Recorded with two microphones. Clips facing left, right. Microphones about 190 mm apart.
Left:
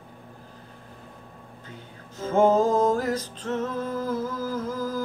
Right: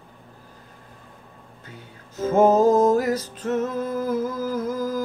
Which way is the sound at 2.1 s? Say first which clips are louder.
Right 3 dB; 10° right (ahead or behind).